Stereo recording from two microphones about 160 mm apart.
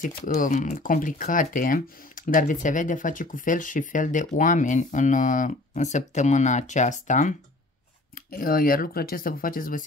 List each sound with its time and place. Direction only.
0.0 s speech: 50° left (ahead or behind)
8.1 s speech: 65° left (ahead or behind)